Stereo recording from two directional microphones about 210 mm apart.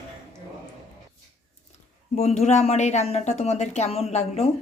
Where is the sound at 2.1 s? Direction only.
30° left (ahead or behind).